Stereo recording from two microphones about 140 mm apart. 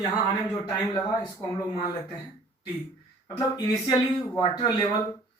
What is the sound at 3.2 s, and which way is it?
Speech, 30° left (ahead or behind).